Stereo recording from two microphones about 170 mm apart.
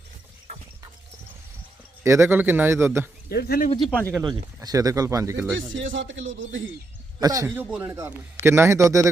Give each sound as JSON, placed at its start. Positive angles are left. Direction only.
{"t": 2.0, "sound": "a man's voice", "side_deg": -15}
{"t": 3.2, "sound": "speech", "side_deg": 65}
{"t": 3.8, "sound": "speech", "side_deg": 5}
{"t": 4.2, "sound": "speech", "side_deg": -25}
{"t": 5.7, "sound": "speech", "side_deg": -90}
{"t": 7.2, "sound": "a man's voice", "side_deg": -20}